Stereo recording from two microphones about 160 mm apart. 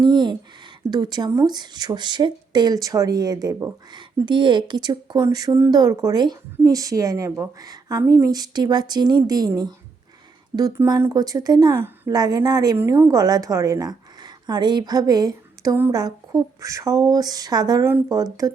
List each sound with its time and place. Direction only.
0.0 s a woman's voice: 30° right (ahead or behind)